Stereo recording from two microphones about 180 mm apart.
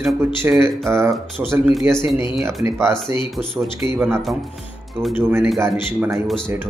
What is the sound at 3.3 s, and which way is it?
Speech, centre (ahead or behind).